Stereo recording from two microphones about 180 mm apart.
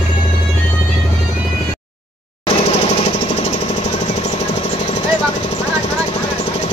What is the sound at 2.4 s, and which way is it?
Jackhammer, 40° left (ahead or behind).